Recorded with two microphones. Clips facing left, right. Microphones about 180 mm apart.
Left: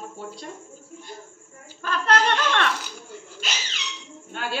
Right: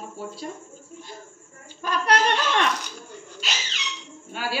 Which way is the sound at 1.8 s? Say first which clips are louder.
Even; 15° right (ahead or behind).